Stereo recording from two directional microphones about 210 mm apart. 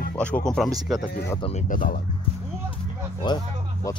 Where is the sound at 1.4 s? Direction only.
35° left (ahead or behind).